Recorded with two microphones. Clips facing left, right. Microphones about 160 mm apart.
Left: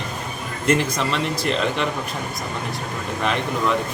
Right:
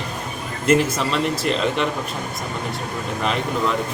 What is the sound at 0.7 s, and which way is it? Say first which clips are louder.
Speech: right 2 dB; 5° right (ahead or behind).